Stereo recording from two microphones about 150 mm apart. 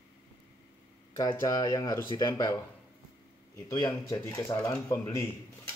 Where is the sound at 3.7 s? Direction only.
25° left (ahead or behind).